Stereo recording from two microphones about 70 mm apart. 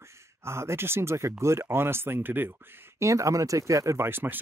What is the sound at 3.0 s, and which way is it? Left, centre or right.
Speech, right.